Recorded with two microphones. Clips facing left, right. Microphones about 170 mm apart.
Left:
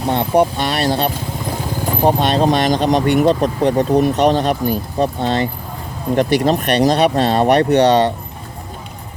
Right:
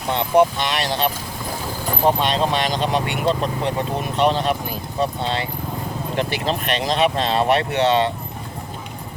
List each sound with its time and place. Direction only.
0.1 s speech: 45° left (ahead or behind)
2.0 s speech: 45° left (ahead or behind)